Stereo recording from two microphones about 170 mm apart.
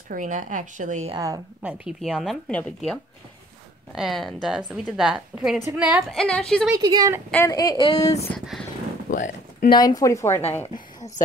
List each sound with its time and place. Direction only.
0.1 s speech: 50° right (ahead or behind)
1.1 s speech: 20° right (ahead or behind)
1.6 s a woman's voice: 5° right (ahead or behind)
6.7 s speech: 20° right (ahead or behind)
7.4 s speech: 20° left (ahead or behind)
9.1 s speech: 50° left (ahead or behind)
9.7 s speech: 25° left (ahead or behind)
10.7 s a sound: 20° left (ahead or behind)